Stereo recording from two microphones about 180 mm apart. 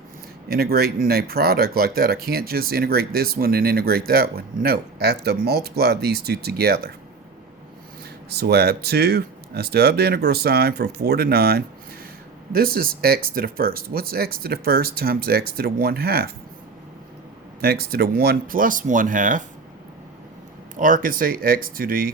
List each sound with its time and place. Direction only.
0.4 s speech: 60° right (ahead or behind)
8.3 s speech: 65° right (ahead or behind)
17.6 s speech: 60° right (ahead or behind)
20.7 s speech: 50° right (ahead or behind)